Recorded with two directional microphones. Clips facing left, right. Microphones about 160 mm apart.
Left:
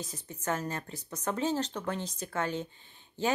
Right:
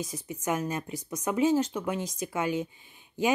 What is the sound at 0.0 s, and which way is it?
Speech, 10° right (ahead or behind).